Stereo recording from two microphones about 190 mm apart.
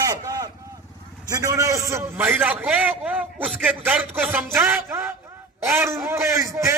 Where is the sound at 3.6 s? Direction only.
5° right (ahead or behind).